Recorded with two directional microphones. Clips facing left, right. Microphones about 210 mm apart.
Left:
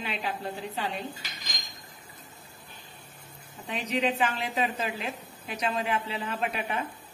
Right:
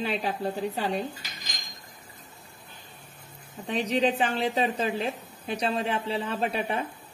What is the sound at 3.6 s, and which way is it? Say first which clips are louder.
A woman's voice: right 4 dB; 35° right (ahead or behind).